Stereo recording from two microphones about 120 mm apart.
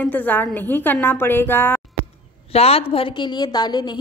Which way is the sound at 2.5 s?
55° left (ahead or behind).